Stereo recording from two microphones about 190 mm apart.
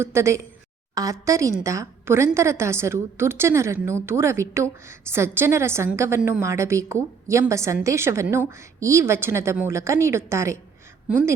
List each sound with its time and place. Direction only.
0.0 s a woman's voice: 15° right (ahead or behind)